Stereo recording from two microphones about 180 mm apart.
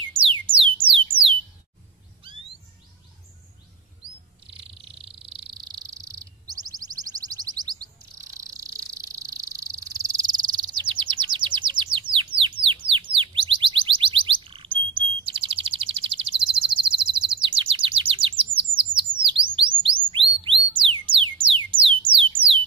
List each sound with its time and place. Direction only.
0.1 s music: 30° right (ahead or behind)
4.6 s bird: 30° right (ahead or behind)
8.3 s insect: 20° right (ahead or behind)